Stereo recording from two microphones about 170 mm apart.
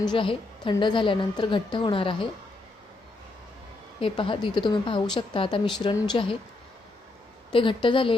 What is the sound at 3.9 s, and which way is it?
A woman's voice, 30° left (ahead or behind).